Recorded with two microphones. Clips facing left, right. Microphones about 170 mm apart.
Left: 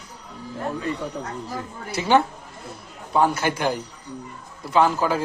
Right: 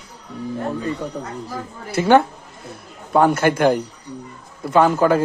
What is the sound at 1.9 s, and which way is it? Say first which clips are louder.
Speech: right 5 dB; 55° right (ahead or behind).